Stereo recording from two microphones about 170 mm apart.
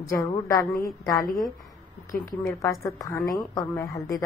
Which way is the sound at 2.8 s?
20° left (ahead or behind).